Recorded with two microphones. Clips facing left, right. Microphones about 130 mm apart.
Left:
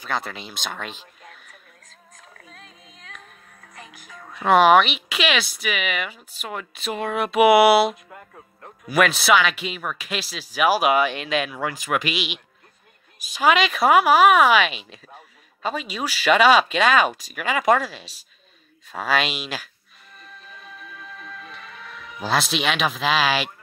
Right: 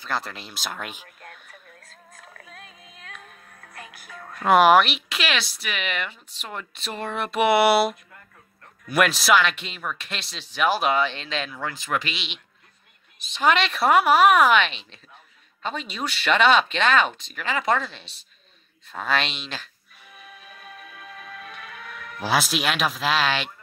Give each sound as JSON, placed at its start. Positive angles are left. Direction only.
{"t": 0.1, "sound": "frog", "side_deg": 0}
{"t": 4.5, "sound": "speech", "side_deg": -5}
{"t": 8.1, "sound": "music", "side_deg": 70}
{"t": 8.8, "sound": "speech", "side_deg": 0}
{"t": 20.1, "sound": "music", "side_deg": -5}